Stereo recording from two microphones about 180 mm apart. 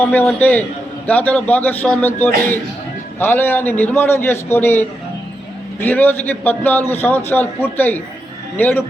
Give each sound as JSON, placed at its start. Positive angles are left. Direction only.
{"t": 0.0, "sound": "a man's voice", "side_deg": 10}